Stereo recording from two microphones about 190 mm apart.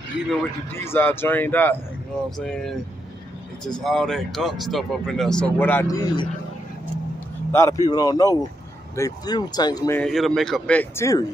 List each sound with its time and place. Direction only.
0.3 s a man's voice: 10° left (ahead or behind)
7.5 s a man's voice: 15° left (ahead or behind)
9.9 s speech: centre (ahead or behind)